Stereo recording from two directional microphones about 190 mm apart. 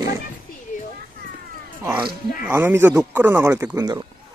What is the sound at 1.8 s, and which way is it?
Speech, 25° right (ahead or behind).